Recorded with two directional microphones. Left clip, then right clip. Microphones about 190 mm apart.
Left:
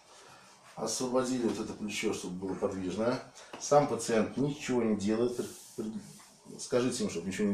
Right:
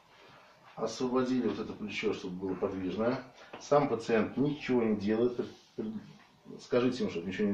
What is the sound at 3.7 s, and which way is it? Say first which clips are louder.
Speech: left 1 dB; 15° left (ahead or behind).